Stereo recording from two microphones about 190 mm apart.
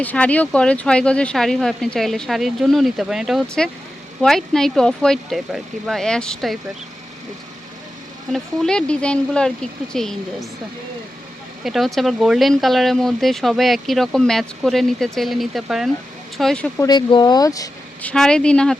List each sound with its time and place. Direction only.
0.0 s speech: 10° left (ahead or behind)
8.3 s speech: 5° left (ahead or behind)
11.6 s speech: centre (ahead or behind)
16.8 s speech: 25° left (ahead or behind)
18.0 s speech: 5° left (ahead or behind)